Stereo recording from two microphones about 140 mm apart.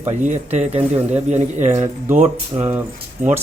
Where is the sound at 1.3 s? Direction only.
55° right (ahead or behind).